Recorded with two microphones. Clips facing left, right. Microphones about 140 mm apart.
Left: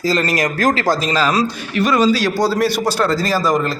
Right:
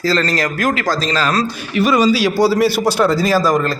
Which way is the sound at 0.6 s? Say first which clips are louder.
Left 4 dB; 35° left (ahead or behind).